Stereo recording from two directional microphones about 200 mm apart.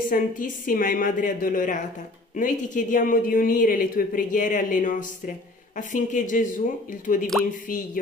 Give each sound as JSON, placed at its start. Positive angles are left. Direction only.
{"t": 0.1, "sound": "a woman's voice", "side_deg": 45}